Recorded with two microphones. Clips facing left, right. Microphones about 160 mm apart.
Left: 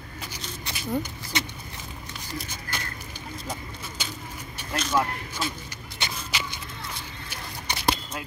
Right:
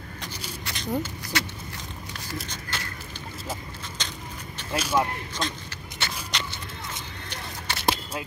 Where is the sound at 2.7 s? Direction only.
10° left (ahead or behind).